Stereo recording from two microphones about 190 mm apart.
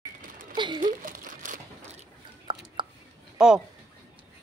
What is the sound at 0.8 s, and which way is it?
Crumpling, 45° right (ahead or behind).